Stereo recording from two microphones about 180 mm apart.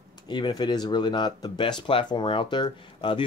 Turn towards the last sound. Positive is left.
turn(degrees=25)  # may be behind; listen again after turning